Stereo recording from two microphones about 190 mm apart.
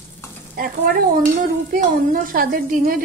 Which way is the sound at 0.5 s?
50° right (ahead or behind).